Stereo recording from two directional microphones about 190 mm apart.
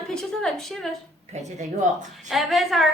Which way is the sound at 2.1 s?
Centre (ahead or behind).